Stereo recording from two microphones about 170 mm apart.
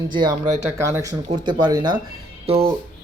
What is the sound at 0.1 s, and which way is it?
Speech, 25° right (ahead or behind).